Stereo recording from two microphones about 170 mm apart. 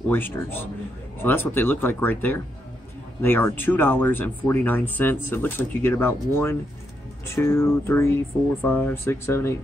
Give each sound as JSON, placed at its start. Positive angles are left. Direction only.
{"t": 0.1, "sound": "speech", "side_deg": 10}